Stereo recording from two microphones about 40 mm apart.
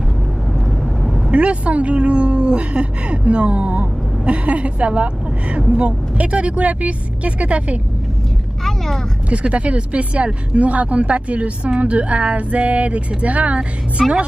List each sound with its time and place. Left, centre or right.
1.3 s speech: right
8.6 s vehicle: centre
9.3 s speech: right